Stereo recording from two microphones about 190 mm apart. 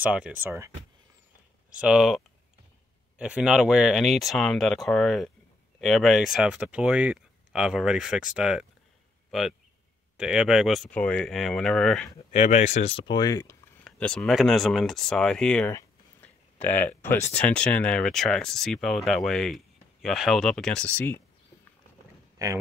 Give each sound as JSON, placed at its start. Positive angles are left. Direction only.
{"t": 0.0, "sound": "speech", "side_deg": -5}
{"t": 1.8, "sound": "speech", "side_deg": -5}
{"t": 12.3, "sound": "speech", "side_deg": 35}
{"t": 13.8, "sound": "speech", "side_deg": 5}
{"t": 22.4, "sound": "speech", "side_deg": -20}